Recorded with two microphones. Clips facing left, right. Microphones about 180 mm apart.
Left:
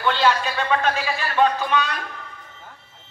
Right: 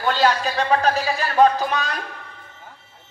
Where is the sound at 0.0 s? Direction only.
40° right (ahead or behind).